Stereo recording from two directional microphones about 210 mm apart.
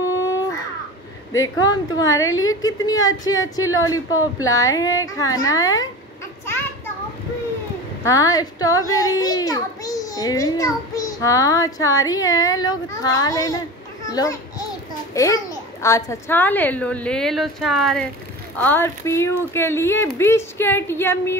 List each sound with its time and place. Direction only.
1.4 s a child's voice: 15° left (ahead or behind)
2.2 s a woman's voice: 70° left (ahead or behind)
2.6 s a child's voice: 15° left (ahead or behind)
8.0 s a child's voice: 15° left (ahead or behind)